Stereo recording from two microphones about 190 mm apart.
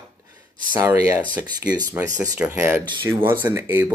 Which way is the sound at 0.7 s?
15° right (ahead or behind).